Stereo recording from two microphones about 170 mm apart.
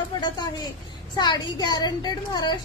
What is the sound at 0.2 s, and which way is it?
Speech, 25° left (ahead or behind).